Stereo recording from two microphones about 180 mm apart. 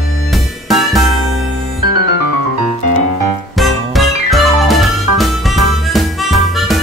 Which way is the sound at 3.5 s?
Centre (ahead or behind).